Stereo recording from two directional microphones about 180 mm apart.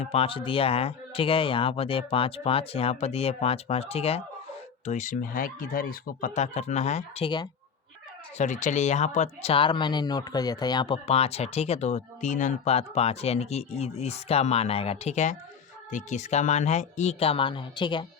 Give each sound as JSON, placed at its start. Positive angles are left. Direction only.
{"t": 0.0, "sound": "speech", "side_deg": 35}
{"t": 8.4, "sound": "speech", "side_deg": 45}